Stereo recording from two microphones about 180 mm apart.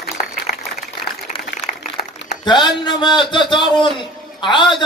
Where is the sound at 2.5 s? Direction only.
25° left (ahead or behind).